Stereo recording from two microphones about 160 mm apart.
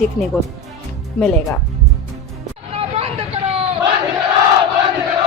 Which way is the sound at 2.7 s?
40° right (ahead or behind).